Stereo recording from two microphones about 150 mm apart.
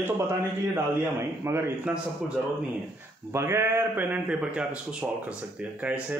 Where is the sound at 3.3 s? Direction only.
15° right (ahead or behind).